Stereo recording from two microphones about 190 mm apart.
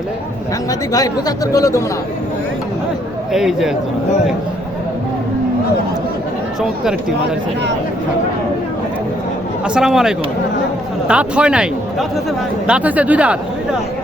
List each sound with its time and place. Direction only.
0.7 s speech: 20° left (ahead or behind)
3.3 s speech: centre (ahead or behind)
9.6 s speech: 5° right (ahead or behind)